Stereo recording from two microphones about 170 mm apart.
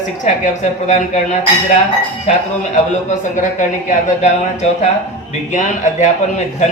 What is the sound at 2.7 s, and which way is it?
Speech, 45° left (ahead or behind).